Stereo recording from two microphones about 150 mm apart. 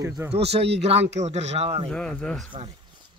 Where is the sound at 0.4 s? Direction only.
45° right (ahead or behind).